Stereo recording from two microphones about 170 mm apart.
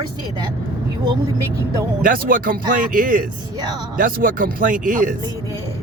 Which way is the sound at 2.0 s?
55° right (ahead or behind).